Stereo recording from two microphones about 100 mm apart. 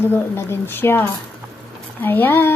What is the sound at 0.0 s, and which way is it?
A woman's voice, 25° left (ahead or behind).